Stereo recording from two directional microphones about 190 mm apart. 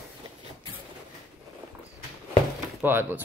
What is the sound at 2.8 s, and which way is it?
Speech, 10° right (ahead or behind).